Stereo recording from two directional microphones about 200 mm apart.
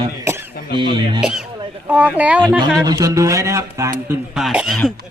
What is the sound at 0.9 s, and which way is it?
Speech, 25° right (ahead or behind).